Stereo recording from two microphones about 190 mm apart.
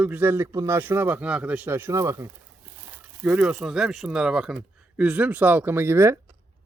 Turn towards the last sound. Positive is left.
turn(degrees=-15)  # may be behind; listen again after turning